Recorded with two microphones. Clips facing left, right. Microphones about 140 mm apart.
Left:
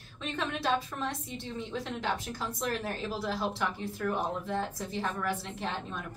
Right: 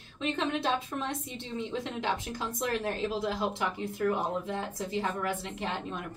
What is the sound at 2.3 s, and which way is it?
Speech, 20° right (ahead or behind).